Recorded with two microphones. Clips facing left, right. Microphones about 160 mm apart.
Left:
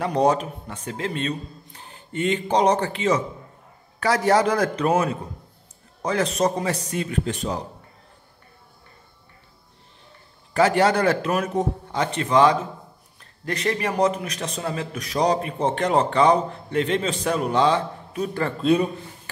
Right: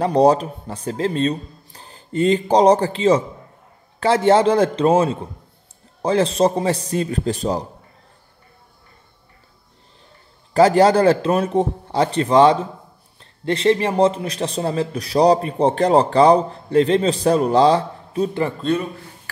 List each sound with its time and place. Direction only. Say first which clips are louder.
0.0 s a man's voice: right 5 dB; 35° right (ahead or behind)
10.5 s a man's voice: right 6 dB; 35° right (ahead or behind)
18.6 s a man's voice: left 5 dB; 10° left (ahead or behind)